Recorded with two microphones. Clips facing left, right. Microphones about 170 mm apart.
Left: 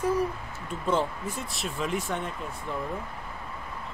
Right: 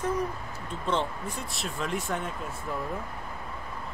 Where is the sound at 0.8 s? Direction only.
Centre (ahead or behind).